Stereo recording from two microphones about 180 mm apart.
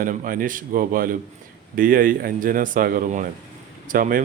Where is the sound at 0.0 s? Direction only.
50° right (ahead or behind).